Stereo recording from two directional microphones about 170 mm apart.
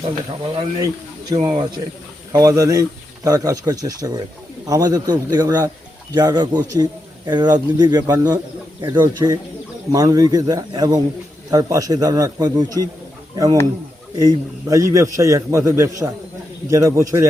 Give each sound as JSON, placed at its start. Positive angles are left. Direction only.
{"t": 1.3, "sound": "a man's voice", "side_deg": -25}